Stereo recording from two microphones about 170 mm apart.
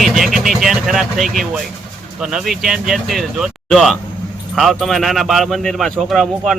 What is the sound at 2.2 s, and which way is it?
A man's voice, 5° right (ahead or behind).